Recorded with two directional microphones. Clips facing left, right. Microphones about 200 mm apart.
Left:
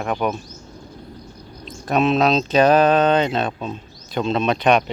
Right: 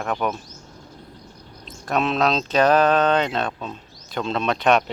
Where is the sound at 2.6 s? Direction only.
20° left (ahead or behind).